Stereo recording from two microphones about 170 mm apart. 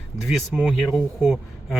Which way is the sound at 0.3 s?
Centre (ahead or behind).